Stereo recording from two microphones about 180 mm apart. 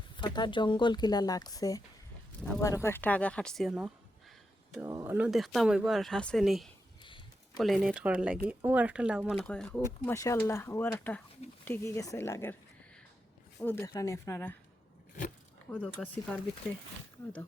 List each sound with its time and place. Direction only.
0.2 s speech: 25° left (ahead or behind); by 3.9 s 5° right (ahead or behind)
4.9 s speech: 20° right (ahead or behind)
5.1 s speech: 5° right (ahead or behind)
7.0 s a sound: 25° left (ahead or behind)
7.6 s speech: centre (ahead or behind)
10.2 s speech: 15° left (ahead or behind)
13.6 s speech: 15° left (ahead or behind)
15.7 s speech: 5° left (ahead or behind)